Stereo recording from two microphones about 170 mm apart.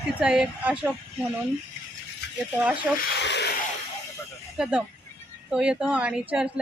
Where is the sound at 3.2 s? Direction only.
85° left.